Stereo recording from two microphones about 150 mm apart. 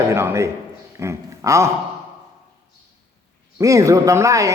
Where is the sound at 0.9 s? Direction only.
20° right (ahead or behind).